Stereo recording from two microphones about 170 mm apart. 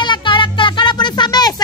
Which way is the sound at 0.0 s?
25° left (ahead or behind).